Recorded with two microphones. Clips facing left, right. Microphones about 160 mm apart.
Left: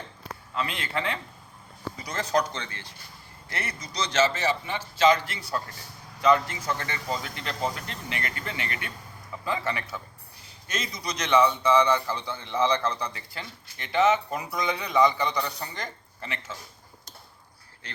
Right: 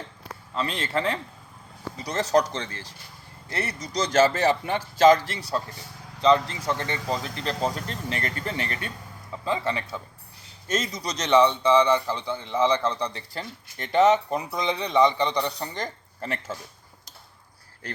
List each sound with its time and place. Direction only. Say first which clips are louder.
0.5 s speech: right 3 dB; 35° right (ahead or behind)
2.5 s a man's voice: right 4 dB; 35° right (ahead or behind)
6.2 s speech: right 2 dB; 30° right (ahead or behind)
9.4 s a man's voice: right 3 dB; 25° right (ahead or behind)
10.7 s speech: right 5 dB; 40° right (ahead or behind)
11.6 s a man's voice: right 2 dB; 15° right (ahead or behind)
13.0 s speech: right 4 dB; 35° right (ahead or behind)